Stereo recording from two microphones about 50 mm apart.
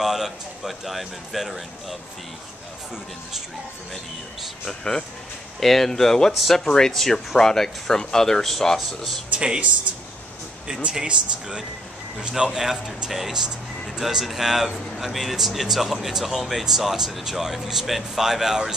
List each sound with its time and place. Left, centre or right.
0.0 s speech: centre
4.6 s speech: centre
6.3 s speech: centre
6.6 s speech: centre
9.3 s speech: centre
11.1 s speech: centre